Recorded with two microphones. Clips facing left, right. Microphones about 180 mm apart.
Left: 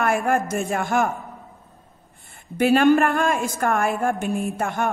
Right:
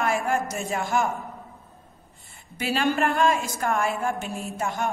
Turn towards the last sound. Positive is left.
turn(degrees=55)  # may be behind; listen again after turning